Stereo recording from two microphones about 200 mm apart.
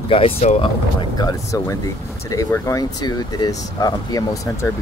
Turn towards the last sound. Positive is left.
turn(degrees=15)  # may be behind; listen again after turning